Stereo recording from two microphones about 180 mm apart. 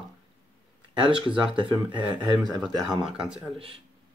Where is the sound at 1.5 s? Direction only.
25° right (ahead or behind).